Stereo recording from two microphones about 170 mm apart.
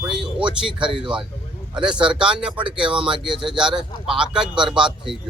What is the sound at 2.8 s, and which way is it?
Speech, 30° right (ahead or behind).